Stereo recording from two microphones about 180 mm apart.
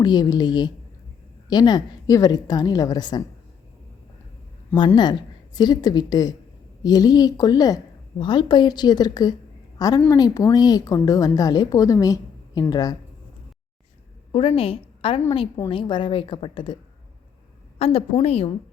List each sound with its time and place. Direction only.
0.0 s a woman's voice: 20° left (ahead or behind)
4.9 s a woman's voice: 25° left (ahead or behind)
14.3 s a woman's voice: 30° left (ahead or behind)
17.7 s a woman's voice: 35° left (ahead or behind)